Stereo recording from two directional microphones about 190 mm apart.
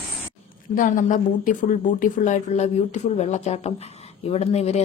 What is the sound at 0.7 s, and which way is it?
Speech, 45° left (ahead or behind).